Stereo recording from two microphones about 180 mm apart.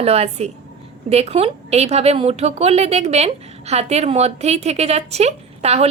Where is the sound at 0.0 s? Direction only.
35° right (ahead or behind).